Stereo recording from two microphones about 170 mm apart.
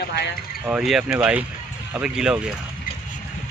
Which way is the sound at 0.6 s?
5° right (ahead or behind).